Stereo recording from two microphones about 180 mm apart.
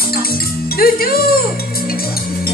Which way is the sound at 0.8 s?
55° left (ahead or behind).